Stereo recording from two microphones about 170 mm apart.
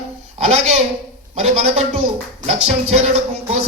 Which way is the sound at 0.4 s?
40° right (ahead or behind).